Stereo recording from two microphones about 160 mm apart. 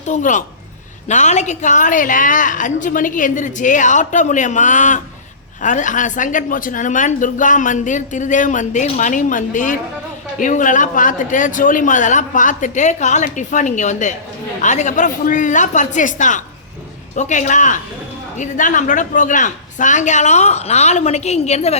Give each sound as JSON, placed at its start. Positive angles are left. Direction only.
{"t": 0.0, "sound": "speech", "side_deg": 50}